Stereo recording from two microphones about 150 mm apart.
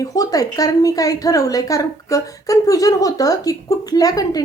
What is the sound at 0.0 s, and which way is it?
Speech, 25° left (ahead or behind).